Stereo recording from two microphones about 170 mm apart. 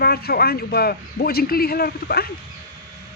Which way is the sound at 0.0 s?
65° left (ahead or behind).